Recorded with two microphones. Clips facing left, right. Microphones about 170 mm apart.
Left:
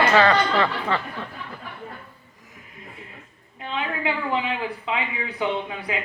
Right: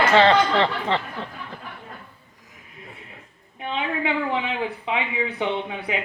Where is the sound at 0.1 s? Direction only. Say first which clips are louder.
Right 2 dB; 25° right (ahead or behind).